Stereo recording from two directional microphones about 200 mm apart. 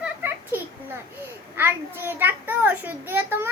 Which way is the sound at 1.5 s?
10° right (ahead or behind).